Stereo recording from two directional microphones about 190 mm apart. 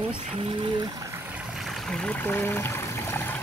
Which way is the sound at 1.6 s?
Centre (ahead or behind).